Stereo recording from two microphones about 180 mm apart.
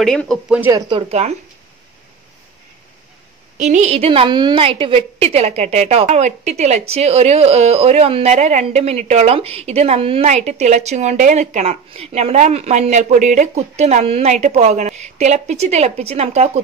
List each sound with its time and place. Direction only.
0.0 s speech: 5° left (ahead or behind)
0.6 s speech: 20° right (ahead or behind); by 1.3 s 35° right (ahead or behind)
3.5 s a woman's voice: 40° right (ahead or behind)